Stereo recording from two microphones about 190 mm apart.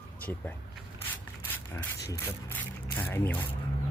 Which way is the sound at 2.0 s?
15° left (ahead or behind).